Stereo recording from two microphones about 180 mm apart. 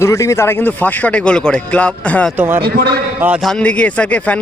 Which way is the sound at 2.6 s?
60° right (ahead or behind).